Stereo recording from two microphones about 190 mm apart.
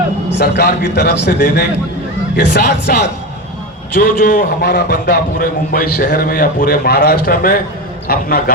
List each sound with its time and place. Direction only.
0.3 s a man's voice: 60° left (ahead or behind)
4.0 s a man's voice: 45° left (ahead or behind)
4.7 s a man's voice: 60° left (ahead or behind)